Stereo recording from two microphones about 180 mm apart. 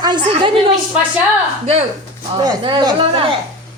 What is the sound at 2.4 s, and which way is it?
Speech, 25° right (ahead or behind).